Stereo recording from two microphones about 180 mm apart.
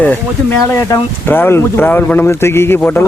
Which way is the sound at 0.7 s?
15° left (ahead or behind).